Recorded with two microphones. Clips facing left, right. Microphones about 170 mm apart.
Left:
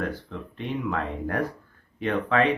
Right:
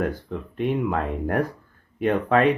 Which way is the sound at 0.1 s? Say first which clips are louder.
Right 4 dB; 50° right (ahead or behind).